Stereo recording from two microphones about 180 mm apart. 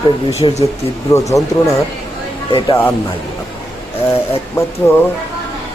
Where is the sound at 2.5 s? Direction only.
25° left (ahead or behind).